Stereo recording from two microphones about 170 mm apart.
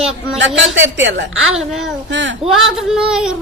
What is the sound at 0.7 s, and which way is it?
Speech, 90° right.